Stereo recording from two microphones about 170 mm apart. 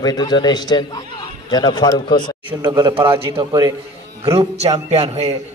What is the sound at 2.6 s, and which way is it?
A man's voice, 25° right (ahead or behind).